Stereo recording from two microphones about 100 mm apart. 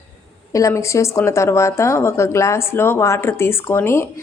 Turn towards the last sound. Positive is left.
turn(degrees=25)  # may be behind; listen again after turning